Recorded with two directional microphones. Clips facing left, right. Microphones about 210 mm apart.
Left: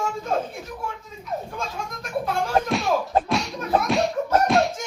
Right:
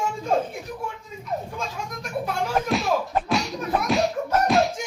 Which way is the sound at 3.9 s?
Centre (ahead or behind).